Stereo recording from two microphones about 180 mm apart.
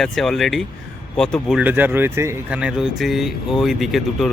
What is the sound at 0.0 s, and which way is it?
Speech, centre (ahead or behind).